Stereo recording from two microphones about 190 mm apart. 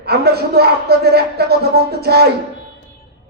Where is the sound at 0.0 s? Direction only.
55° right (ahead or behind).